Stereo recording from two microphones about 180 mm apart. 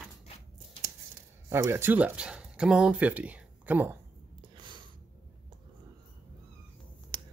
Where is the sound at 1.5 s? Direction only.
15° right (ahead or behind).